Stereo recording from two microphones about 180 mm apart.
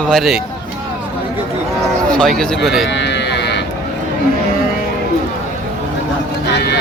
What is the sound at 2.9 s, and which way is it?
Livestock, 75° left (ahead or behind).